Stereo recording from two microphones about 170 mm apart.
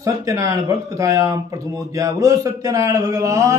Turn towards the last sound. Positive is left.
turn(degrees=-20)  # may be behind; listen again after turning